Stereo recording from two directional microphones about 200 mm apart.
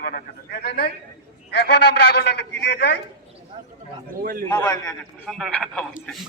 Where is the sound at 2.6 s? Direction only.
60° left (ahead or behind).